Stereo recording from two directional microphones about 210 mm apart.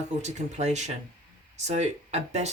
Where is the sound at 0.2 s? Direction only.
35° right (ahead or behind).